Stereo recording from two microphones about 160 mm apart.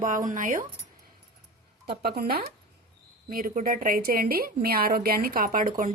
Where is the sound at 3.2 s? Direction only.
55° right (ahead or behind).